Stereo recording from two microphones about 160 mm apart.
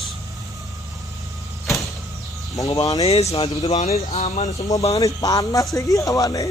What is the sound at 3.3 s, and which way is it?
Speech, 30° left (ahead or behind).